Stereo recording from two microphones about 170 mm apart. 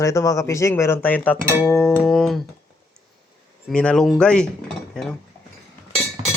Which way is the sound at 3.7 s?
5° left (ahead or behind).